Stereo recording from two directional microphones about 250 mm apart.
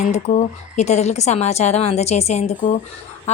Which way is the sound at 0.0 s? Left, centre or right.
Left.